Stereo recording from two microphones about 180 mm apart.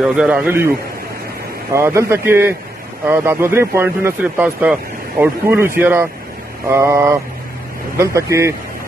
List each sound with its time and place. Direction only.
0.0 s speech: 5° right (ahead or behind)
1.7 s speech: 15° right (ahead or behind)